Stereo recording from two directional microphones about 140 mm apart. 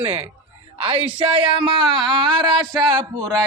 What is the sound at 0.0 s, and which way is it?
Speech, 45° right (ahead or behind).